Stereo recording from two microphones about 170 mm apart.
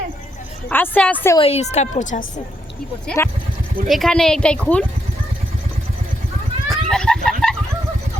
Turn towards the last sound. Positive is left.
turn(degrees=5)  # may be behind; listen again after turning